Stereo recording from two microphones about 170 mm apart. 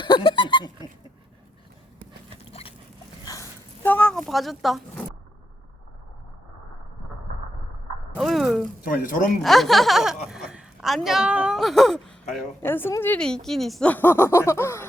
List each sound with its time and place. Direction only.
0.0 s a sound: 25° left (ahead or behind)
2.5 s dog: 35° left (ahead or behind)
3.2 s a sound: 20° left (ahead or behind)
3.9 s speech: 5° left (ahead or behind)
8.1 s speech: centre (ahead or behind)
8.8 s speech: 55° left (ahead or behind)
9.4 s speech: centre (ahead or behind)
12.6 s speech: 10° left (ahead or behind)